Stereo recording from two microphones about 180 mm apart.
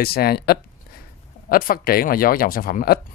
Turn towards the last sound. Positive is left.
turn(degrees=55)  # may be behind; listen again after turning